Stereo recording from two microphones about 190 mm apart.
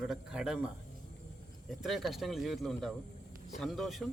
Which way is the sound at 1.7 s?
Centre (ahead or behind).